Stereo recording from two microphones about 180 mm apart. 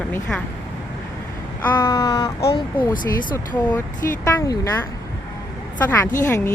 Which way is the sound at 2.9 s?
50° left (ahead or behind).